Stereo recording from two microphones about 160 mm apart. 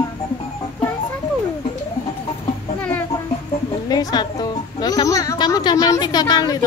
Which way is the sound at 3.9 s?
25° left (ahead or behind).